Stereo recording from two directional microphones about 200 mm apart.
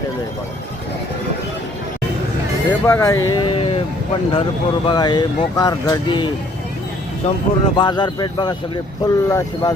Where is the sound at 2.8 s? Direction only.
10° left (ahead or behind).